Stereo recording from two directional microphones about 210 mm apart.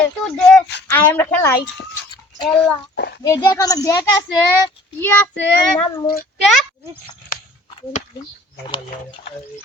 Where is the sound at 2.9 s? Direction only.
55° left (ahead or behind).